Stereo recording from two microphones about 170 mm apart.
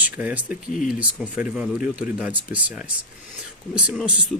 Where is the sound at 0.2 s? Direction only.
10° right (ahead or behind).